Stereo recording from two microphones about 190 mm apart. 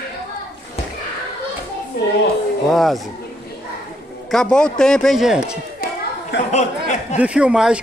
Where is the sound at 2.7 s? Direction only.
Centre (ahead or behind).